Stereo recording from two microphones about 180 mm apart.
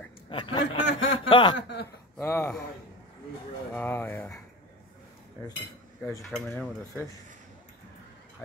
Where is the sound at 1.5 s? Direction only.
70° left (ahead or behind).